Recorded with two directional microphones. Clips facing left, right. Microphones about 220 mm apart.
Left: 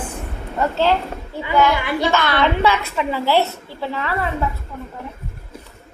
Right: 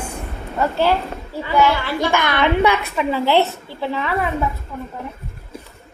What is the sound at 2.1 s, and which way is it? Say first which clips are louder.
A woman's voice: right 2 dB; 15° right (ahead or behind).